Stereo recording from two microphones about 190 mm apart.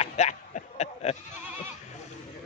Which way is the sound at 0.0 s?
35° left (ahead or behind).